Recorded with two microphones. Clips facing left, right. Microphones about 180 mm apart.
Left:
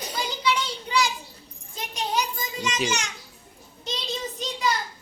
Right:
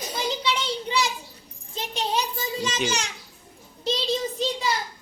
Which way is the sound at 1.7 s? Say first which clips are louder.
Right 1 dB; 25° right (ahead or behind).